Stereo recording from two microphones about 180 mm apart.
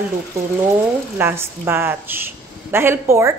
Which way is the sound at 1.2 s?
10° right (ahead or behind).